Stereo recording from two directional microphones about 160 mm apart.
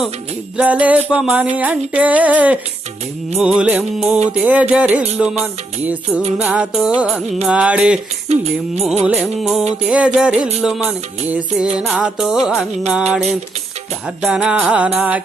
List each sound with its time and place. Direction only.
0.5 s music: 10° right (ahead or behind)
8.3 s music: 40° right (ahead or behind)
9.0 s music: 5° right (ahead or behind)